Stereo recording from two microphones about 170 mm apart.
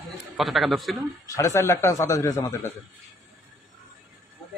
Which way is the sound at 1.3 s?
15° left (ahead or behind).